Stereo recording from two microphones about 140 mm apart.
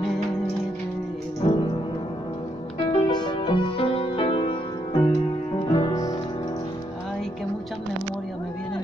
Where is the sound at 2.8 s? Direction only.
35° left (ahead or behind).